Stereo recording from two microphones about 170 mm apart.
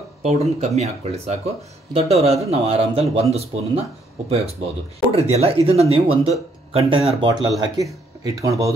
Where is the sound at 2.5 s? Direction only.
35° right (ahead or behind).